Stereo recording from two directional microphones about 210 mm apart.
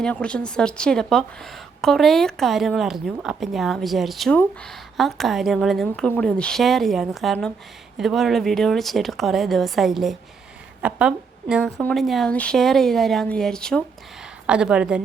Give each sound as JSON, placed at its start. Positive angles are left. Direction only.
{"t": 0.0, "sound": "a woman's voice", "side_deg": 5}